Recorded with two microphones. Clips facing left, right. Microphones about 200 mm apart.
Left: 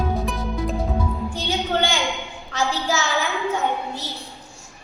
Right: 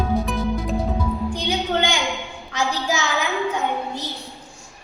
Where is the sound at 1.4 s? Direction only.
15° right (ahead or behind).